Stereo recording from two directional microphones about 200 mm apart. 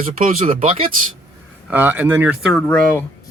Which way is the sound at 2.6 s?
10° left (ahead or behind).